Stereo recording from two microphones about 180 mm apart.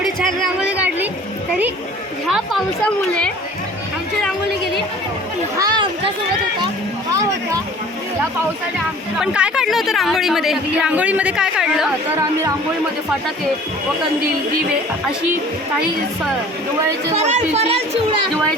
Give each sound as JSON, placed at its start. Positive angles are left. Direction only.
{"t": 0.0, "sound": "a sound", "side_deg": 0}
{"t": 2.2, "sound": "a woman's voice", "side_deg": 0}
{"t": 5.5, "sound": "children playing", "side_deg": -20}
{"t": 7.1, "sound": "speech", "side_deg": -20}
{"t": 9.2, "sound": "a woman's voice", "side_deg": -5}
{"t": 17.2, "sound": "speech", "side_deg": -40}